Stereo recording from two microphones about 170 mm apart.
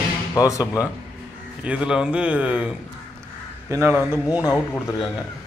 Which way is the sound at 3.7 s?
15° right (ahead or behind).